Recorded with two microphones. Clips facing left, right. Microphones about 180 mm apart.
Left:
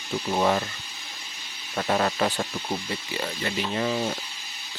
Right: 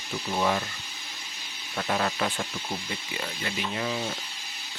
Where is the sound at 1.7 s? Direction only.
40° left (ahead or behind).